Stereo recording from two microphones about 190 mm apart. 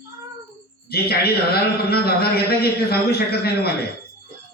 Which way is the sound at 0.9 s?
55° left (ahead or behind).